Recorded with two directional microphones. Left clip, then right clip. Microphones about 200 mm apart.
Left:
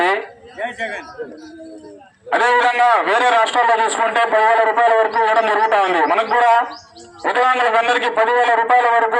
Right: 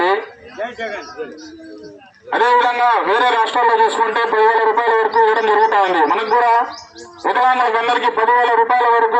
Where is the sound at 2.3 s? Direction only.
15° left (ahead or behind).